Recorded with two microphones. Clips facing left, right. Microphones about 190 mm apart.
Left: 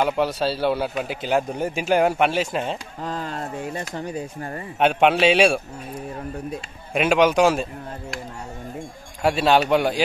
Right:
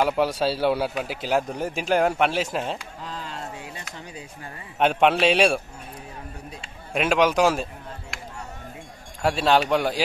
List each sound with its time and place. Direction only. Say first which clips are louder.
0.0 s a man's voice: even; 5° right (ahead or behind)
3.0 s speech: left 6 dB; 50° left (ahead or behind)
4.7 s a man's voice: left 2 dB; centre (ahead or behind)
6.9 s a man's voice: left 3 dB; centre (ahead or behind)
9.2 s a man's voice: left 2 dB; 5° left (ahead or behind)